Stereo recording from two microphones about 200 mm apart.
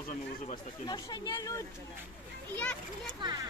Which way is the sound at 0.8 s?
20° left (ahead or behind).